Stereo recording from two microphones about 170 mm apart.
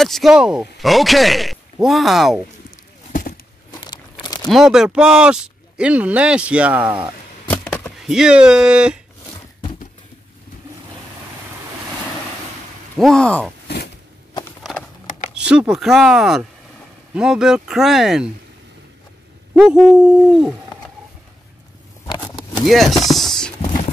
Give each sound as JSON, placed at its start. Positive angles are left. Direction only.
{"t": 0.0, "sound": "speech", "side_deg": 0}
{"t": 3.1, "sound": "a sound", "side_deg": 55}
{"t": 3.7, "sound": "crumpling", "side_deg": 25}
{"t": 4.5, "sound": "speech", "side_deg": 0}
{"t": 7.4, "sound": "chop", "side_deg": 10}
{"t": 8.1, "sound": "speech", "side_deg": -5}
{"t": 13.0, "sound": "speech", "side_deg": 5}
{"t": 14.6, "sound": "clip-clop", "side_deg": 0}
{"t": 15.3, "sound": "speech", "side_deg": -5}
{"t": 19.6, "sound": "speech", "side_deg": -5}
{"t": 22.7, "sound": "speech", "side_deg": 0}